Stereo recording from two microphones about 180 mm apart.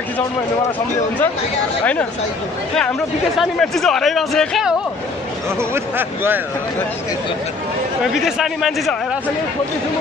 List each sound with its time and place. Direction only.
3.3 s speech: centre (ahead or behind)
5.6 s speech: 10° right (ahead or behind)
8.0 s speech: centre (ahead or behind)